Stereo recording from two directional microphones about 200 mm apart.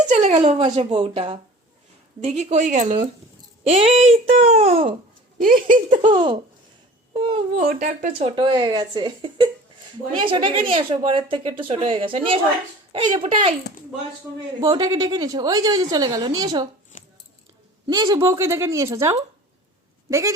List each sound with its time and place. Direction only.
0.1 s a woman's voice: 35° right (ahead or behind)
5.5 s a sound: 45° right (ahead or behind)
6.1 s a woman's voice: 25° right (ahead or behind)
7.5 s a child's voice: 40° right (ahead or behind)
8.4 s a woman's voice: 20° right (ahead or behind)
14.6 s a woman's voice: 20° right (ahead or behind)
16.9 s a sound: 40° left (ahead or behind)
17.8 s a woman's voice: 20° right (ahead or behind)